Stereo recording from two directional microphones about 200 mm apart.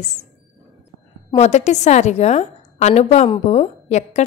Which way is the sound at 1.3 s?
35° left (ahead or behind).